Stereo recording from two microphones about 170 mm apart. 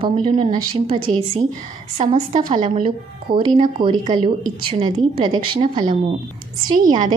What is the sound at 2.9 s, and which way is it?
Speech, 30° right (ahead or behind).